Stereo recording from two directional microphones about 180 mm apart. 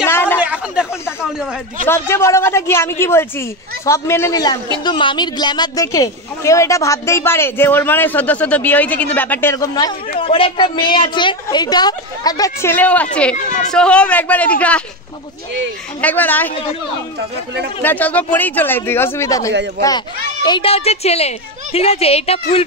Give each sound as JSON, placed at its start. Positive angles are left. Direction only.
{"t": 0.0, "sound": "a sound", "side_deg": 15}
{"t": 0.4, "sound": "a sound", "side_deg": -5}
{"t": 1.9, "sound": "speech", "side_deg": 15}
{"t": 10.2, "sound": "a woman's voice", "side_deg": 30}
{"t": 16.0, "sound": "speech", "side_deg": 10}
{"t": 17.8, "sound": "speech", "side_deg": 10}
{"t": 20.4, "sound": "a woman's voice", "side_deg": 30}